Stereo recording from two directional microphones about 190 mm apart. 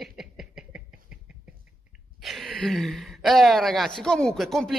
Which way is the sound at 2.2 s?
Centre (ahead or behind).